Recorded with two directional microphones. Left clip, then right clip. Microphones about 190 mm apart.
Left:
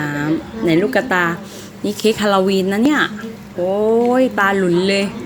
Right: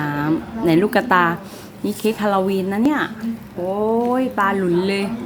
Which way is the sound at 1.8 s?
5° left (ahead or behind).